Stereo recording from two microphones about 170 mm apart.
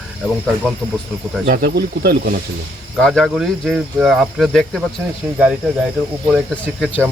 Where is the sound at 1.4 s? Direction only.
60° right (ahead or behind).